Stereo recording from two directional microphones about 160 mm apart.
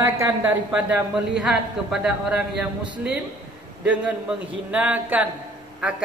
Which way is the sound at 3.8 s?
10° right (ahead or behind).